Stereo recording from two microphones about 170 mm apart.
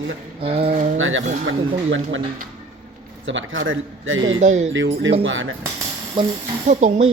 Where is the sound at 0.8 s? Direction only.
45° right (ahead or behind).